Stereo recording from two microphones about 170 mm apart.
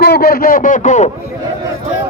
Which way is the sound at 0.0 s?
65° left (ahead or behind).